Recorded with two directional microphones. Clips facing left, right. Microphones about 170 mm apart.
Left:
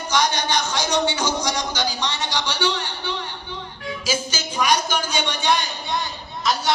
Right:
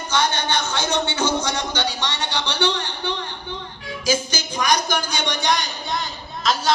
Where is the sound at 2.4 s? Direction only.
60° right (ahead or behind).